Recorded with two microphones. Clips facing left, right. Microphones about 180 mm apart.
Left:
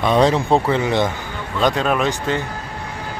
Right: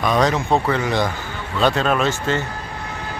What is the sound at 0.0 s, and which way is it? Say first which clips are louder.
Speech: left 3 dB; 30° left (ahead or behind).